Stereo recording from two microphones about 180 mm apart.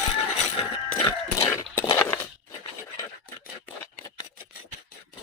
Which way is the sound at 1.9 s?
10° left (ahead or behind).